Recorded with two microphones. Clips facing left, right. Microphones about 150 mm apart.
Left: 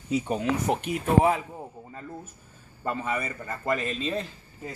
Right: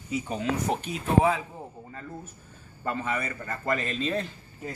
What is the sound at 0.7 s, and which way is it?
Speech, 15° left (ahead or behind).